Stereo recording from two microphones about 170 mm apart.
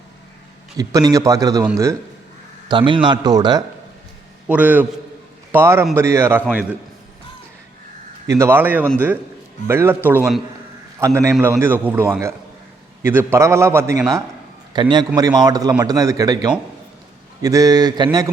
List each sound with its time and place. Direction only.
0.8 s a man's voice: 20° right (ahead or behind)
2.6 s a man's voice: 30° right (ahead or behind)
4.4 s a man's voice: 10° right (ahead or behind)
8.3 s a man's voice: 15° right (ahead or behind)
14.7 s a man's voice: 25° right (ahead or behind)